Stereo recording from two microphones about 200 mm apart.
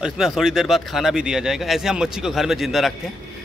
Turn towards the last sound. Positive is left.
turn(degrees=0)  # may be behind; listen again after turning